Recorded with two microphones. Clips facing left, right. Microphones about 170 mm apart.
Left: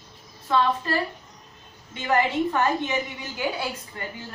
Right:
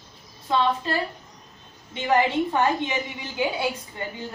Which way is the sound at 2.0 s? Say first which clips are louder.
Right 1 dB; 20° right (ahead or behind).